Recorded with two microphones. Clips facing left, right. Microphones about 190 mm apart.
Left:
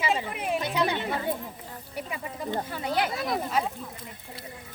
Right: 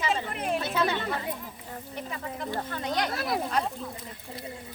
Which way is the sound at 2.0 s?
10° left (ahead or behind).